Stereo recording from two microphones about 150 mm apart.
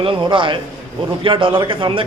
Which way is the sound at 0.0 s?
35° right (ahead or behind).